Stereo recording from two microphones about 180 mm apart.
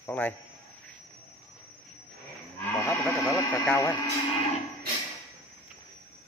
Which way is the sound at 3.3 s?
15° left (ahead or behind).